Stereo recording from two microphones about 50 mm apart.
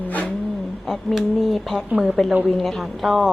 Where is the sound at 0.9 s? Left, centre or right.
Centre.